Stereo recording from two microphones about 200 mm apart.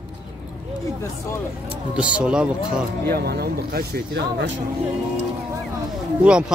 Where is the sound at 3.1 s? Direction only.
50° right (ahead or behind).